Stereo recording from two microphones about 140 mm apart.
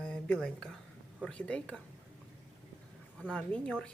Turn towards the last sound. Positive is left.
turn(degrees=5)  # may be behind; listen again after turning